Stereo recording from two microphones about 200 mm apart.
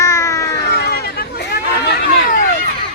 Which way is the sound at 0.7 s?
55° left (ahead or behind).